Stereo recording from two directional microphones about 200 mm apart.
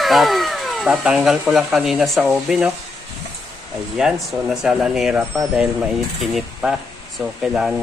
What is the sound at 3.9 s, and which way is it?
Speech, centre (ahead or behind).